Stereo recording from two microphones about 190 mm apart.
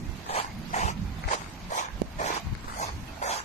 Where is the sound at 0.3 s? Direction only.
35° left (ahead or behind).